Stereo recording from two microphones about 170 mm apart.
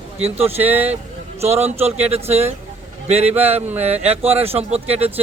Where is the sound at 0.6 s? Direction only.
10° right (ahead or behind).